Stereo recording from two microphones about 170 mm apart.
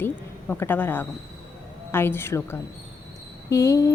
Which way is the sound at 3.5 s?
20° left (ahead or behind).